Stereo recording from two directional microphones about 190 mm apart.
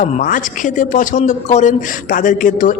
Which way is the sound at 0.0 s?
45° left (ahead or behind).